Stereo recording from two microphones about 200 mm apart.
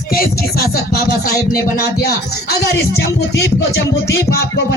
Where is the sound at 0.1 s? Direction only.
50° left (ahead or behind).